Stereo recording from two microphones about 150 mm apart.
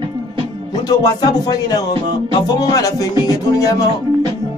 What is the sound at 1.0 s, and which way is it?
Music, 25° left (ahead or behind).